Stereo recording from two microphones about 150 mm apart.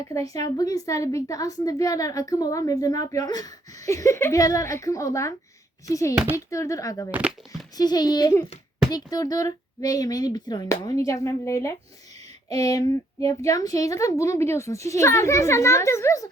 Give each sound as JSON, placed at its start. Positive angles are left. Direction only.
{"t": 0.0, "sound": "a woman's voice", "side_deg": 20}
{"t": 7.1, "sound": "speech", "side_deg": -10}
{"t": 7.8, "sound": "a woman's voice", "side_deg": 25}